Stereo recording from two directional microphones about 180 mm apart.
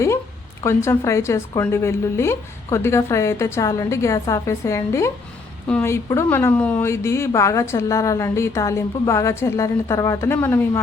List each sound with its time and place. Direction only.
0.6 s speech: 15° left (ahead or behind)